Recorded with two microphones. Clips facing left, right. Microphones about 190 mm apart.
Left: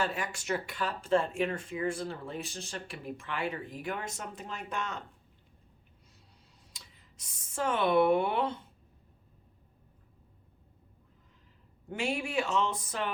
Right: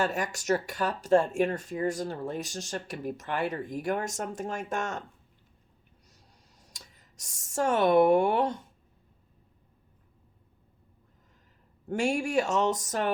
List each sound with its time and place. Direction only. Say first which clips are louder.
0.0 s speech: right 4 dB; 45° right (ahead or behind)
6.6 s speech: right 4 dB; 45° right (ahead or behind)
11.9 s speech: right 6 dB; 45° right (ahead or behind)